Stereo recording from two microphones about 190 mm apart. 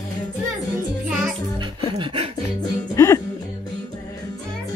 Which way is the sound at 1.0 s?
5° right (ahead or behind).